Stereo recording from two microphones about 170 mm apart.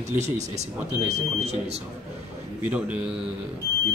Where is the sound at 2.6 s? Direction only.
5° right (ahead or behind).